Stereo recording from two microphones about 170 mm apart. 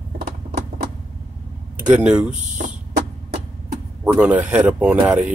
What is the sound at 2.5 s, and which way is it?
Power windows, 50° right (ahead or behind).